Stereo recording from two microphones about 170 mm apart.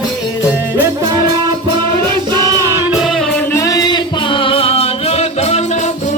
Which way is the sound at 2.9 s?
Centre (ahead or behind).